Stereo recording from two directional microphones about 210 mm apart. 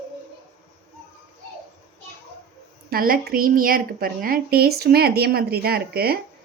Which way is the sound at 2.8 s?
45° right (ahead or behind).